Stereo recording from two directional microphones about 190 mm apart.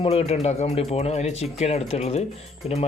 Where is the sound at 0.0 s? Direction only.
30° left (ahead or behind).